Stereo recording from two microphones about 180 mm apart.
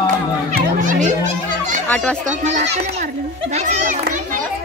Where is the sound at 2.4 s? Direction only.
40° right (ahead or behind).